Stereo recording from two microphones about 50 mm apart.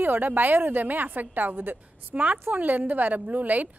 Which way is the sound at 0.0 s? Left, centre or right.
Right.